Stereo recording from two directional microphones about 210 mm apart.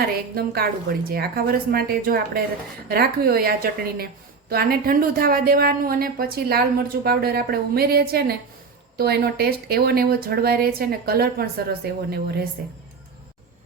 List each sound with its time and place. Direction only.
0.3 s a woman's voice: 45° right (ahead or behind)